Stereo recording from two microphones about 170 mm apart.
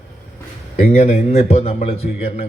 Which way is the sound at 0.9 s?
40° left (ahead or behind).